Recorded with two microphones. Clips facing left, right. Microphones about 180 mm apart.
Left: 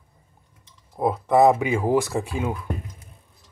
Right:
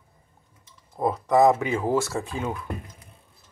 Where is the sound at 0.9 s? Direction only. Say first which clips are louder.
Left 2 dB; 10° left (ahead or behind).